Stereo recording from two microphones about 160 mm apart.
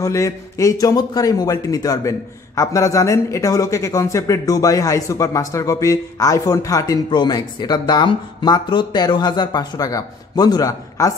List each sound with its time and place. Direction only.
0.0 s a man's voice: 20° left (ahead or behind)